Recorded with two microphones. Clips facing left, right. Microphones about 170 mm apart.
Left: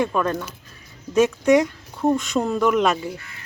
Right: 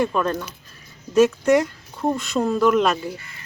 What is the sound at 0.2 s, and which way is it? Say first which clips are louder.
Speech: even; 5° left (ahead or behind).